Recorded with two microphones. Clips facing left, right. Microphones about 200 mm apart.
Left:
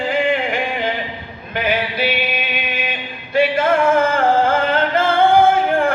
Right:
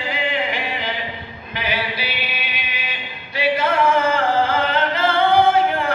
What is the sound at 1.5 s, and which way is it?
Male singing, 50° left (ahead or behind).